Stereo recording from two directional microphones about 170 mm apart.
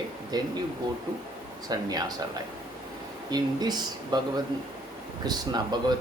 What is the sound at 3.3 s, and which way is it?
Speech, 25° right (ahead or behind).